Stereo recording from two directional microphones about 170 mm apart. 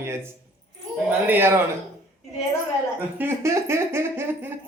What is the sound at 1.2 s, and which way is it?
Speech, 15° right (ahead or behind).